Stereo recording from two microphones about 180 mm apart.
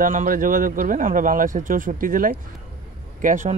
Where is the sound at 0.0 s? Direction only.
50° right (ahead or behind).